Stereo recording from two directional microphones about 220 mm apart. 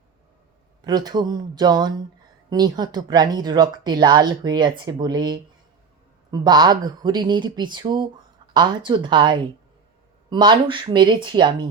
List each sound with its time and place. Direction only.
0.9 s speech: 20° right (ahead or behind)